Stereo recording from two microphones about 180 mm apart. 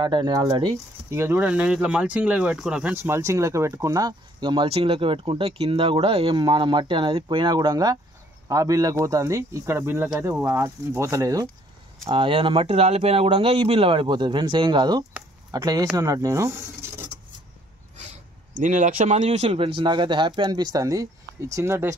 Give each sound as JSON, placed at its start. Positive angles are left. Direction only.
{"t": 0.0, "sound": "speech", "side_deg": -25}
{"t": 12.1, "sound": "speech", "side_deg": -30}
{"t": 17.9, "sound": "speech", "side_deg": -40}